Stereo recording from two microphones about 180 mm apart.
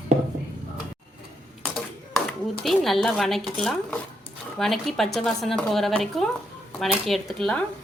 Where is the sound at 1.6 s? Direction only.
Centre (ahead or behind).